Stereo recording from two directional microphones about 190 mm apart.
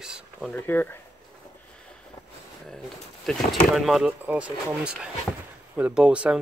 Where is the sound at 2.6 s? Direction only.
5° left (ahead or behind).